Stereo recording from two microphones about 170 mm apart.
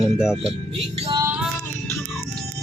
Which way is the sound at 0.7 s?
35° right (ahead or behind).